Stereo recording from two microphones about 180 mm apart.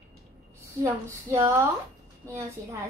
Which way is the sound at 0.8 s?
15° right (ahead or behind).